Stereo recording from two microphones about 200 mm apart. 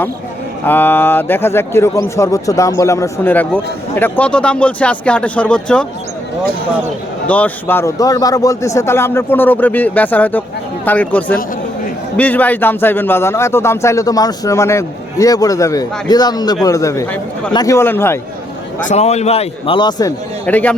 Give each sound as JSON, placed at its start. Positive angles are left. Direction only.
{"t": 0.6, "sound": "a man's voice", "side_deg": 10}
{"t": 7.3, "sound": "a man's voice", "side_deg": 5}
{"t": 18.9, "sound": "a man's voice", "side_deg": 35}
{"t": 20.4, "sound": "a man's voice", "side_deg": 10}